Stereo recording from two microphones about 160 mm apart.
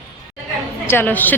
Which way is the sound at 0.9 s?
10° left (ahead or behind).